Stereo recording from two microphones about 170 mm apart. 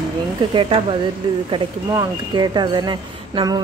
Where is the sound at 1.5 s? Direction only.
25° right (ahead or behind).